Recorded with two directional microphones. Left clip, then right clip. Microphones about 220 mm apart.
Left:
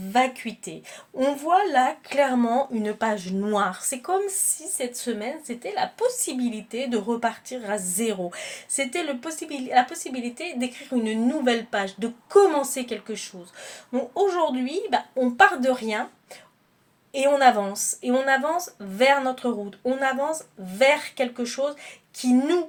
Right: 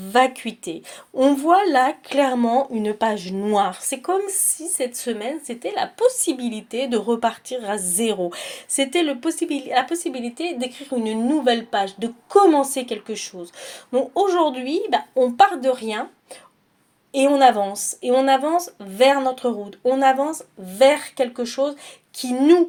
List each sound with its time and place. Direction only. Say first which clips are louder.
0.1 s a woman's voice: right 5 dB; 35° right (ahead or behind)